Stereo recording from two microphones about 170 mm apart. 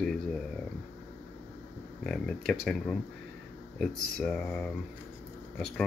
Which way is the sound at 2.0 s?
5° left (ahead or behind).